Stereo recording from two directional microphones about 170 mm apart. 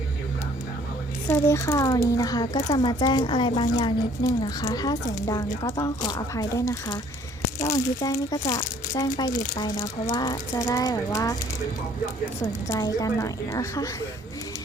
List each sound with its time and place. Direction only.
1.3 s a child's voice: 15° left (ahead or behind)
12.6 s a child's voice: 20° left (ahead or behind)